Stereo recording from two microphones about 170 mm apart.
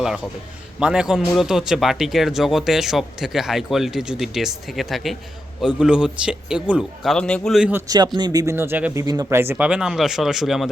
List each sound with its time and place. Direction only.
0.8 s speech: 5° right (ahead or behind)
7.7 s speech: 20° right (ahead or behind); by 10.7 s centre (ahead or behind)